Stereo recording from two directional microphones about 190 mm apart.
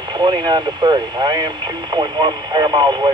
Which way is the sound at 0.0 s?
20° right (ahead or behind).